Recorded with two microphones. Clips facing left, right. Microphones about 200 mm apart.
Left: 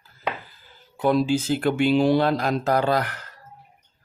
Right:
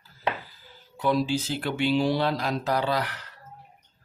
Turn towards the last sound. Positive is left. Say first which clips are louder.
# left 5 dB
turn(degrees=45)  # may be behind; listen again after turning